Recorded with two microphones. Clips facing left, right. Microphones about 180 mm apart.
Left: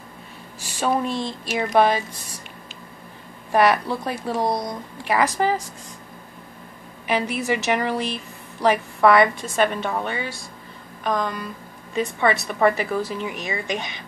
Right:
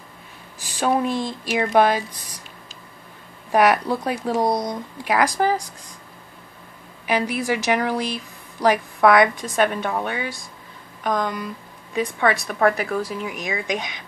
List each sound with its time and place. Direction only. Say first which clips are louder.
0.8 s speech: right 2 dB; 5° right (ahead or behind)
3.5 s a woman's voice: right 1 dB; 10° right (ahead or behind)
7.1 s a woman's voice: right 1 dB; 10° right (ahead or behind)
12.4 s a woman's voice: even; centre (ahead or behind)